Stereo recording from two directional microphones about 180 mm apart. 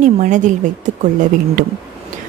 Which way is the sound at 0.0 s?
45° right (ahead or behind).